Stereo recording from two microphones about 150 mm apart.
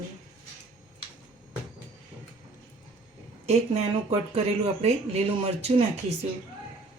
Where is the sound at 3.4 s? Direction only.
45° right (ahead or behind).